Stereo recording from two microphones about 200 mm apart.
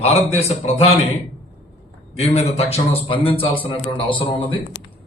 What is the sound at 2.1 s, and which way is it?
A man's voice, 30° left (ahead or behind).